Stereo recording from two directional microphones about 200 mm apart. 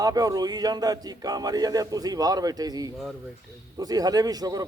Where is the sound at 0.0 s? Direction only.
20° right (ahead or behind).